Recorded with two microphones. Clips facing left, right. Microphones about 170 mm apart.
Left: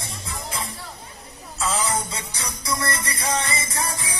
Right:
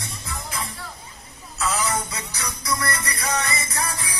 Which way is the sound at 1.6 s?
25° left (ahead or behind).